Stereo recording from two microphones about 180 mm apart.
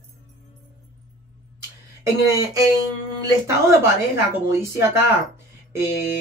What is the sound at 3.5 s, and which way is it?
Speech, 15° right (ahead or behind).